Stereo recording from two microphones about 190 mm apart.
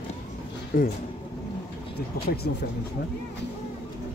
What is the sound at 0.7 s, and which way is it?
Speech, 50° left (ahead or behind).